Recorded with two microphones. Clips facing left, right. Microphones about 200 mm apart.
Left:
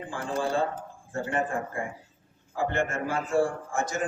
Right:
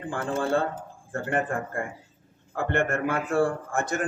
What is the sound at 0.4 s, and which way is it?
A man's voice, 60° right (ahead or behind).